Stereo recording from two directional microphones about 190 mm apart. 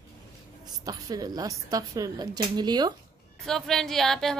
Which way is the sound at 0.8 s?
20° right (ahead or behind).